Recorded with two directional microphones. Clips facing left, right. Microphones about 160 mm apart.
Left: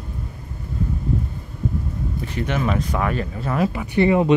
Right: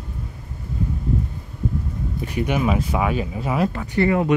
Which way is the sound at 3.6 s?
10° left (ahead or behind).